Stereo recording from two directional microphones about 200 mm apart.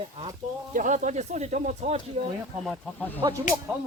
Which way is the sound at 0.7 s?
40° right (ahead or behind).